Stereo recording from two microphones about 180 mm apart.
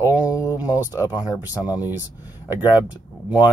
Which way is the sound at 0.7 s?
10° right (ahead or behind).